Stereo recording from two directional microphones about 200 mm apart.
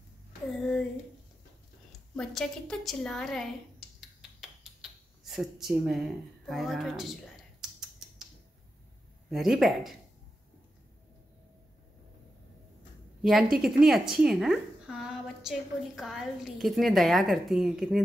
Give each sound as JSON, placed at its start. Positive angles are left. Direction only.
{"t": 0.6, "sound": "a woman's voice", "side_deg": 0}
{"t": 1.9, "sound": "a woman's voice", "side_deg": 0}
{"t": 4.0, "sound": "finger snapping", "side_deg": 0}
{"t": 5.2, "sound": "a woman's voice", "side_deg": 0}
{"t": 9.3, "sound": "a woman's voice", "side_deg": 0}
{"t": 13.2, "sound": "a woman's voice", "side_deg": 0}